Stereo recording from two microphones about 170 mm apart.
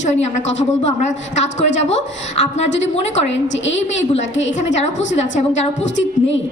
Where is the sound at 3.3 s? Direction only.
90° left.